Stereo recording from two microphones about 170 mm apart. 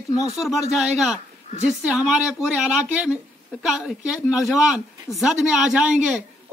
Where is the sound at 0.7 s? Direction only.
Centre (ahead or behind).